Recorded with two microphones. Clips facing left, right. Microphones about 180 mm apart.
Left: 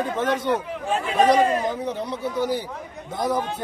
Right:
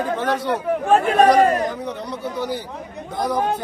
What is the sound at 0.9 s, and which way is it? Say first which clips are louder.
Speech: right 4 dB; 55° right (ahead or behind).